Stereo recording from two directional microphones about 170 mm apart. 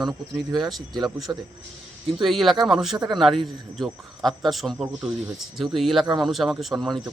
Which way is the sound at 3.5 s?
Centre (ahead or behind).